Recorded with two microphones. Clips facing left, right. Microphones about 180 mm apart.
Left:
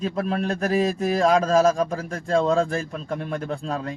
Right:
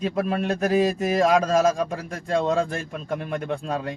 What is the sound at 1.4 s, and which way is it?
Speech, centre (ahead or behind).